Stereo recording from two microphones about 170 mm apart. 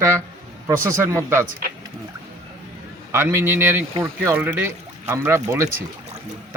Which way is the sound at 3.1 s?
15° right (ahead or behind).